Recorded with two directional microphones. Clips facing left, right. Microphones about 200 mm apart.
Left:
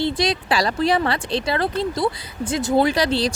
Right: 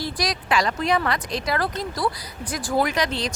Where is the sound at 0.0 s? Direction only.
25° left (ahead or behind).